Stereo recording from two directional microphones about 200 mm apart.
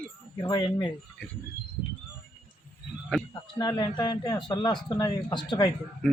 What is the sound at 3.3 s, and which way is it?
Speech, 20° left (ahead or behind).